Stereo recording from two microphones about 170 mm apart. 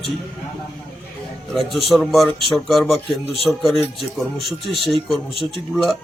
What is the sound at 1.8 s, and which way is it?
A man's voice, centre (ahead or behind).